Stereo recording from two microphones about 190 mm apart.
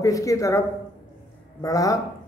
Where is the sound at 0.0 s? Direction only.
15° left (ahead or behind).